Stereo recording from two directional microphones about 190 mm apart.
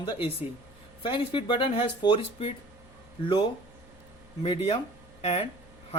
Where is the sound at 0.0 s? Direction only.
25° left (ahead or behind).